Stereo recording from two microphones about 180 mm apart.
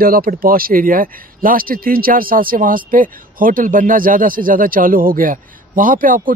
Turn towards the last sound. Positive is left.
turn(degrees=-50)  # may be behind; listen again after turning